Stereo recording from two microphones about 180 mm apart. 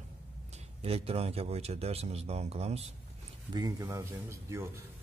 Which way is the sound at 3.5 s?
20° right (ahead or behind).